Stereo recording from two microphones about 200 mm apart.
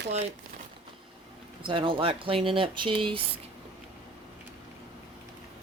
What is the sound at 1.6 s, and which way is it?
Speech, 25° right (ahead or behind).